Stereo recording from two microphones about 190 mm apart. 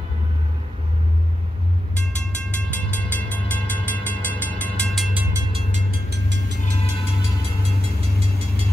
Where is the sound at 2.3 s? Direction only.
10° left (ahead or behind).